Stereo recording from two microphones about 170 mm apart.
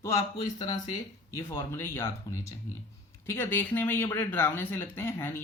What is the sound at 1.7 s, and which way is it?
Speech, 15° left (ahead or behind).